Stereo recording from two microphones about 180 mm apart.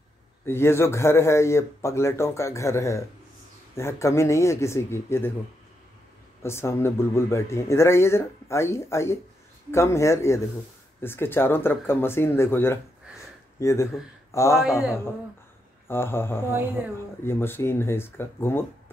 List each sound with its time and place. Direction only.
0.5 s speech: 15° left (ahead or behind)
6.4 s speech: 15° left (ahead or behind)
14.6 s a man's voice: 5° right (ahead or behind)
15.9 s speech: 15° left (ahead or behind)